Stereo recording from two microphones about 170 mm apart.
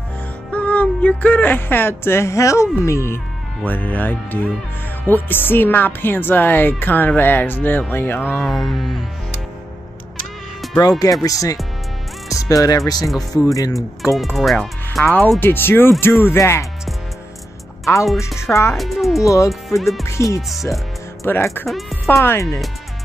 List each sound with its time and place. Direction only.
0.5 s speech: 10° left (ahead or behind)
8.5 s speech: centre (ahead or behind)
10.8 s speech: 20° left (ahead or behind)
14.1 s speech: centre (ahead or behind)
15.4 s speech: 10° left (ahead or behind)
18.0 s speech: centre (ahead or behind)
18.5 s speech: 15° left (ahead or behind)
18.8 s speech: centre (ahead or behind)
19.2 s speech: 20° left (ahead or behind)
19.8 s speech: centre (ahead or behind)
20.1 s speech: 15° left (ahead or behind)